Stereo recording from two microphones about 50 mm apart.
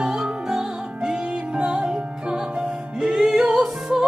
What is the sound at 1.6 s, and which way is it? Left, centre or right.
Music, centre.